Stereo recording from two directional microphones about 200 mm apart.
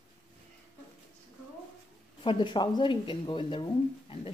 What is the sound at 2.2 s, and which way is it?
Speech, 25° left (ahead or behind).